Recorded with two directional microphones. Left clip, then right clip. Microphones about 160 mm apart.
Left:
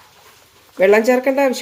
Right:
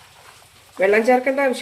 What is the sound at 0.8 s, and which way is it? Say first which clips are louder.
Speech: left 3 dB; 40° left (ahead or behind).